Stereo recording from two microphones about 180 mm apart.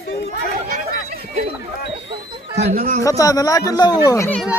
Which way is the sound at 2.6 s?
55° right (ahead or behind).